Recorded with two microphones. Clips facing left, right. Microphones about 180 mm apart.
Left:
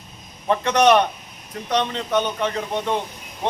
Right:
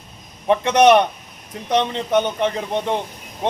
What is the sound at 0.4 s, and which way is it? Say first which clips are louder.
A man's voice: right 3 dB; 20° right (ahead or behind).